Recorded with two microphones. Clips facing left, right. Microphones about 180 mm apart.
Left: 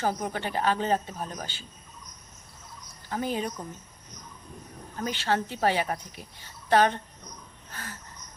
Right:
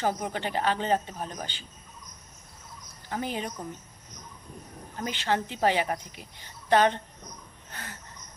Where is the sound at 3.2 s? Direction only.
45° left (ahead or behind).